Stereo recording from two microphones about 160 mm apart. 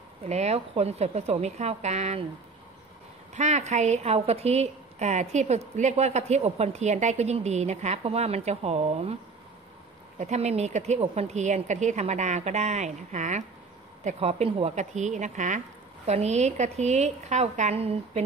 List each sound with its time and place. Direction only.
0.2 s a woman's voice: 45° right (ahead or behind)
3.3 s a woman's voice: 45° right (ahead or behind)
10.1 s a woman's voice: 45° right (ahead or behind)